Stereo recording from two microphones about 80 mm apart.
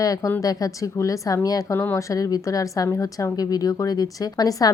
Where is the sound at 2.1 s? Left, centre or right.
Left.